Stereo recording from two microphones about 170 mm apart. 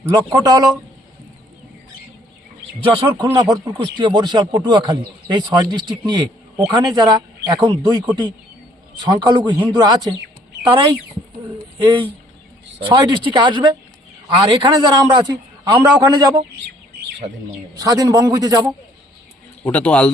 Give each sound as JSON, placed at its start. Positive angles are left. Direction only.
{"t": 0.1, "sound": "speech", "side_deg": -20}
{"t": 2.8, "sound": "speech", "side_deg": -30}
{"t": 11.8, "sound": "speech", "side_deg": -25}
{"t": 17.7, "sound": "speech", "side_deg": -20}
{"t": 19.6, "sound": "a man's voice", "side_deg": 10}